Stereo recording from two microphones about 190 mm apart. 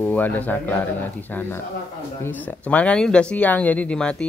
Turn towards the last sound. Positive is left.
turn(degrees=5)  # may be behind; listen again after turning